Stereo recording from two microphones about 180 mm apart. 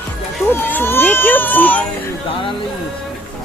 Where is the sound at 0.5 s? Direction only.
10° left (ahead or behind).